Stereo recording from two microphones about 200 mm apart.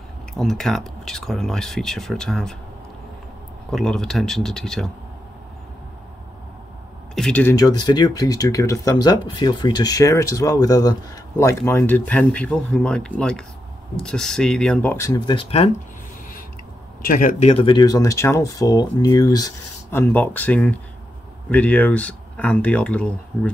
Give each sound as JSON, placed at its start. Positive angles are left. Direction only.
{"t": 0.3, "sound": "speech", "side_deg": 0}
{"t": 3.7, "sound": "speech", "side_deg": 5}
{"t": 7.2, "sound": "speech", "side_deg": 5}
{"t": 17.1, "sound": "speech", "side_deg": 40}
{"t": 17.5, "sound": "speech", "side_deg": 25}